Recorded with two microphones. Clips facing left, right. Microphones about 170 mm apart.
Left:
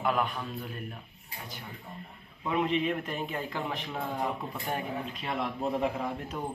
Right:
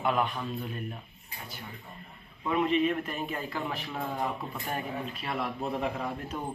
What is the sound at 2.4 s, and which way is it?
Speech, 15° left (ahead or behind).